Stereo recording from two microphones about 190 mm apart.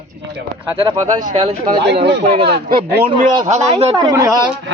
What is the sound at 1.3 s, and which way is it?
Speech, 35° right (ahead or behind).